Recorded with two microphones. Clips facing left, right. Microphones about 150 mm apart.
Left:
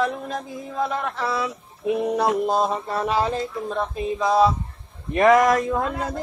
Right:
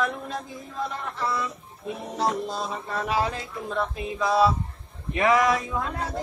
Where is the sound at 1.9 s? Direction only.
65° left (ahead or behind).